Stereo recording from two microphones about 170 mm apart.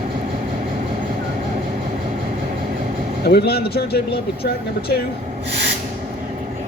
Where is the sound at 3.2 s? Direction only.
70° left (ahead or behind).